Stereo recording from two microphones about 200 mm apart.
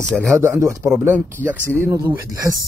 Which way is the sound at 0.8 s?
5° right (ahead or behind).